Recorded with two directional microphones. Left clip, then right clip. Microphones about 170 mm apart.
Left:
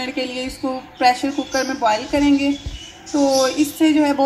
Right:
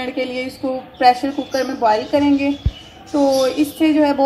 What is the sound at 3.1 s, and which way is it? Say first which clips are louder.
Speech: right 1 dB; 10° left (ahead or behind).